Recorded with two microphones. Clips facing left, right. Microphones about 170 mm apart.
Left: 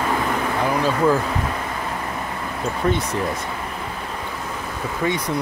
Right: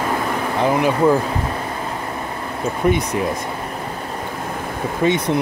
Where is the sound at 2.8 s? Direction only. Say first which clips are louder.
Right 4 dB; 15° right (ahead or behind).